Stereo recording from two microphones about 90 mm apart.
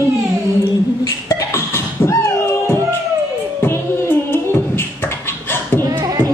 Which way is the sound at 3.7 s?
25° left (ahead or behind).